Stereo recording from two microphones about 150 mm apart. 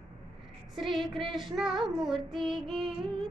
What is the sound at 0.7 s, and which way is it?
Child singing, centre (ahead or behind).